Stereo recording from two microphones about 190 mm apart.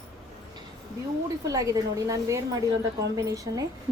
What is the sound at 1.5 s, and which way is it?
A woman's voice, 20° right (ahead or behind).